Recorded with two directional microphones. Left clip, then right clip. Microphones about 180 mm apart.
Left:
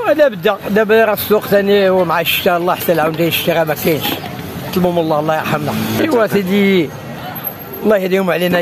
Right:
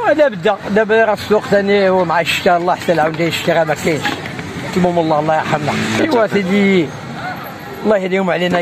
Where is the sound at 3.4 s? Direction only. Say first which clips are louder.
Right 3 dB; 10° left (ahead or behind).